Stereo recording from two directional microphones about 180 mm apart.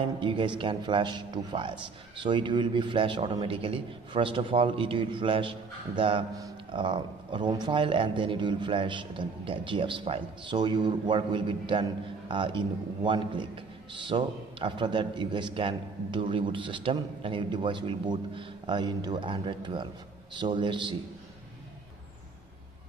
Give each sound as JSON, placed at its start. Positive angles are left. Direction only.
{"t": 0.2, "sound": "a man's voice", "side_deg": -30}